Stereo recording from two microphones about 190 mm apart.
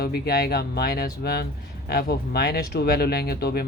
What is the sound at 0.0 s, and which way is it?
Speech, 55° left (ahead or behind).